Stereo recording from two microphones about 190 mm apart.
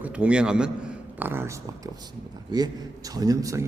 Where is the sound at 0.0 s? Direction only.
5° right (ahead or behind).